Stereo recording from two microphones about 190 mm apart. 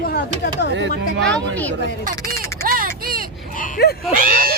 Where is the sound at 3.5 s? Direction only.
45° left (ahead or behind).